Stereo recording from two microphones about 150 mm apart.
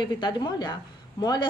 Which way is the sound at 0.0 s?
30° left (ahead or behind).